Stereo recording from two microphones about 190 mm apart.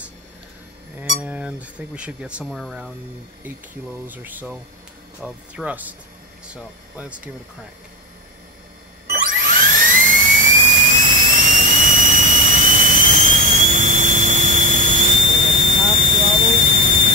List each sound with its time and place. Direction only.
1.2 s speech: 5° right (ahead or behind)
4.1 s speech: 10° right (ahead or behind)
9.1 s dental drill: 45° right (ahead or behind)
15.9 s vehicle: 45° right (ahead or behind)